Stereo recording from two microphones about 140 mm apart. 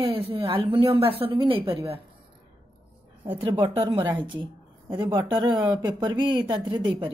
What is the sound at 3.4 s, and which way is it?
Speech, 35° right (ahead or behind).